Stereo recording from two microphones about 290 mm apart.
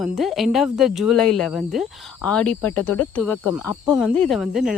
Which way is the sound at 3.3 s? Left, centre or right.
Left.